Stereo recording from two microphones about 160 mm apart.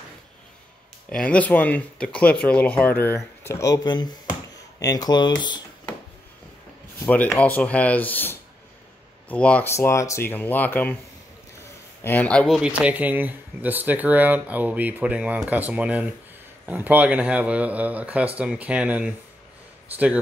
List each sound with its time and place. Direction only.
1.1 s speech: 10° left (ahead or behind); by 5.9 s 25° left (ahead or behind)
7.1 s speech: 10° left (ahead or behind)
12.0 s speech: 10° left (ahead or behind); by 19.1 s 5° right (ahead or behind)